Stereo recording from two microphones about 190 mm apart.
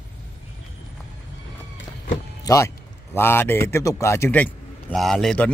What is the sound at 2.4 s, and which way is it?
A man's voice, 15° left (ahead or behind).